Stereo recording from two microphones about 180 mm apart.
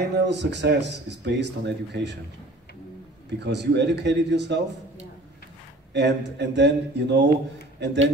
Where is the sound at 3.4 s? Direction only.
75° right (ahead or behind).